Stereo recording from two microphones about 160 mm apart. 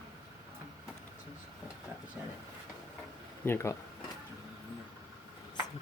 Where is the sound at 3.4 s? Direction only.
15° left (ahead or behind).